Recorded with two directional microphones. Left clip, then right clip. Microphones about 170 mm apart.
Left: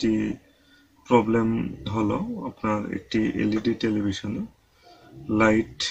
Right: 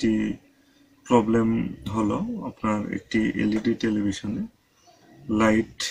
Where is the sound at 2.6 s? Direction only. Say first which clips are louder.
Even; 10° right (ahead or behind).